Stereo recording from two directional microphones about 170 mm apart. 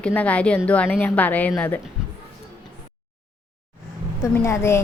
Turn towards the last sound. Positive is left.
turn(degrees=15)  # may be behind; listen again after turning